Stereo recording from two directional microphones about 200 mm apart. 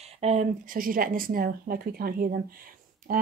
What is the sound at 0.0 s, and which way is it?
Speech, 35° right (ahead or behind).